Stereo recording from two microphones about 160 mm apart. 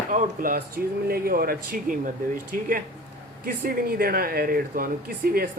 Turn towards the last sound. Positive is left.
turn(degrees=-65)  # may be behind; listen again after turning